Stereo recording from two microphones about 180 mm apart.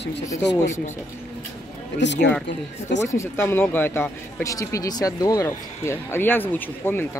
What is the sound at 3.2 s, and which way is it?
Speech, 15° left (ahead or behind).